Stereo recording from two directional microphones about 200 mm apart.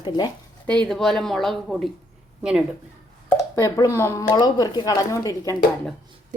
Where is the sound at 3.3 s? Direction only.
15° left (ahead or behind).